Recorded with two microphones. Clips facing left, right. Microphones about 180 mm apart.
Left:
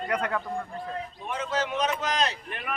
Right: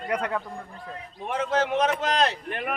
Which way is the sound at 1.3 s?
55° right (ahead or behind).